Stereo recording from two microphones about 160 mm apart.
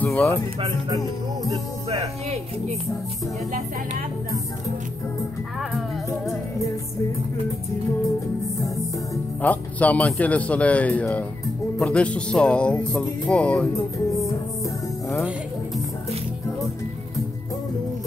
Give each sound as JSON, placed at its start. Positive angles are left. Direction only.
{"t": 0.0, "sound": "speech", "side_deg": 15}
{"t": 0.6, "sound": "speech", "side_deg": -25}
{"t": 1.9, "sound": "speech", "side_deg": -40}
{"t": 5.6, "sound": "music", "side_deg": 0}
{"t": 9.1, "sound": "speech", "side_deg": 10}
{"t": 15.0, "sound": "speech", "side_deg": 0}